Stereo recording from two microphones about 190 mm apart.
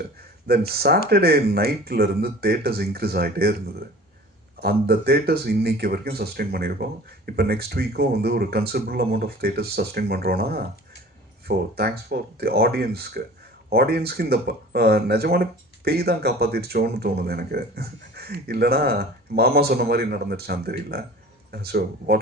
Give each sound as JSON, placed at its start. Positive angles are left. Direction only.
{"t": 0.7, "sound": "speech", "side_deg": -55}
{"t": 4.6, "sound": "speech", "side_deg": -55}